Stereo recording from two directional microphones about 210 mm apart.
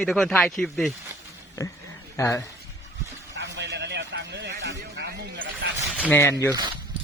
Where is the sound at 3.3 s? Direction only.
55° right (ahead or behind).